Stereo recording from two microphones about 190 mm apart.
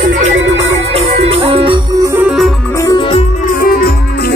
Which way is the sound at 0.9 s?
30° right (ahead or behind).